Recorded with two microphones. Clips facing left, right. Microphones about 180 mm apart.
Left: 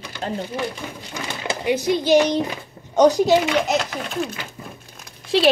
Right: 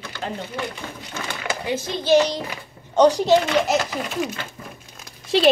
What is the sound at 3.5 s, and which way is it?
Speech, 5° right (ahead or behind).